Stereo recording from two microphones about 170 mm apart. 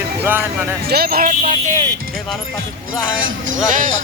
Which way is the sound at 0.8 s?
65° right (ahead or behind).